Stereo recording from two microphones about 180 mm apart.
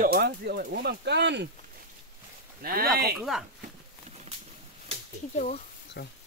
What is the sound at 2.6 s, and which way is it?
Speech, 55° right (ahead or behind).